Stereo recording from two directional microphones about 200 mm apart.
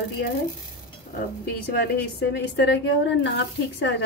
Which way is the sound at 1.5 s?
55° left (ahead or behind).